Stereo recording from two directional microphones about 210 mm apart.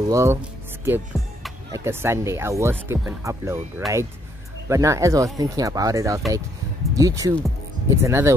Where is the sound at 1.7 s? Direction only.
10° right (ahead or behind).